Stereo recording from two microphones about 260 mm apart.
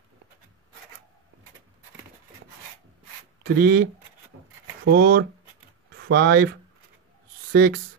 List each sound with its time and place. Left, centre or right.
3.4 s speech: right
4.9 s speech: right
7.5 s speech: right